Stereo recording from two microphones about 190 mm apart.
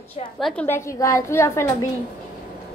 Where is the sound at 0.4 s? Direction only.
Centre (ahead or behind).